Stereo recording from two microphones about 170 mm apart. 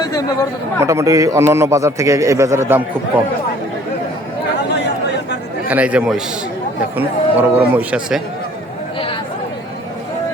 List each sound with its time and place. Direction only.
0.8 s a man's voice: 20° right (ahead or behind)
4.5 s chatter: 85° left
5.6 s a man's voice: 10° right (ahead or behind)